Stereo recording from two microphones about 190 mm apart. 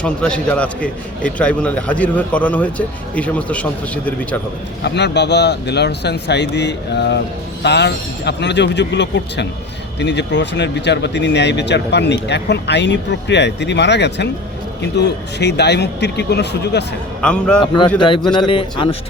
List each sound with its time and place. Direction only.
0.0 s a man's voice: 5° left (ahead or behind)
4.8 s speech: 60° left (ahead or behind)
17.2 s a man's voice: 5° left (ahead or behind)
18.3 s a man's voice: 25° left (ahead or behind)